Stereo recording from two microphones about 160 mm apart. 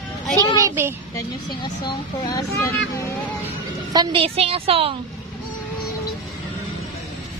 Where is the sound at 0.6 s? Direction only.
15° right (ahead or behind).